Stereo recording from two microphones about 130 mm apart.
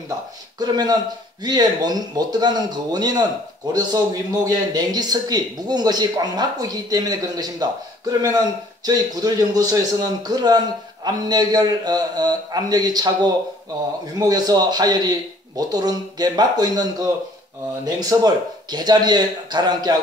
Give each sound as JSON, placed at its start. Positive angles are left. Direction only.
{"t": 0.6, "sound": "a man's voice", "side_deg": -30}